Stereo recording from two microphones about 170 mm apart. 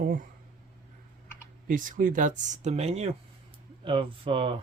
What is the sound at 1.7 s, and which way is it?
Speech, 50° right (ahead or behind).